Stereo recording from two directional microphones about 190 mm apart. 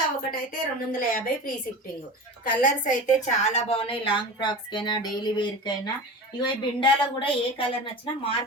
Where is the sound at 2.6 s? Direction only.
40° left (ahead or behind).